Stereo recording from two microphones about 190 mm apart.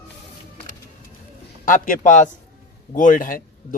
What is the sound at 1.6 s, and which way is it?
Speech, 45° left (ahead or behind).